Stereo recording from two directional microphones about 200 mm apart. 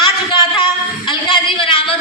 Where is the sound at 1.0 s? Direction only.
25° left (ahead or behind).